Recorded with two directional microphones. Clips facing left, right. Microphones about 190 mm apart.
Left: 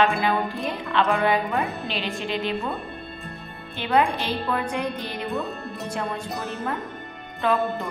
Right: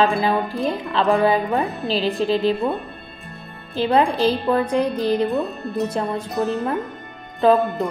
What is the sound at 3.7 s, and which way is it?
A woman's voice, 35° right (ahead or behind).